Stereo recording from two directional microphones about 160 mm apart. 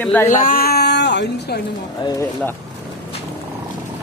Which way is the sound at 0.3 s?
60° left (ahead or behind).